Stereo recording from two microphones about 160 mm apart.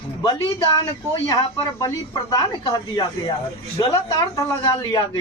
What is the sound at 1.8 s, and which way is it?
Speech, 20° left (ahead or behind).